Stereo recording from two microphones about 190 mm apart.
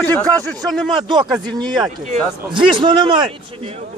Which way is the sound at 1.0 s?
25° right (ahead or behind).